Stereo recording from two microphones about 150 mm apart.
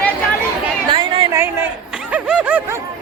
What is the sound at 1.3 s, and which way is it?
Speech, 15° right (ahead or behind).